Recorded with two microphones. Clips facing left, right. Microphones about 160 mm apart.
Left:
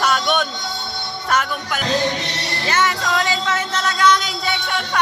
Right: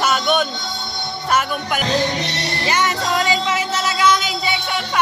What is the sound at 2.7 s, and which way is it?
Music, 15° right (ahead or behind).